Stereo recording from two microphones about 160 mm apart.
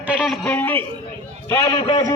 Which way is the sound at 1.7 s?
30° left (ahead or behind).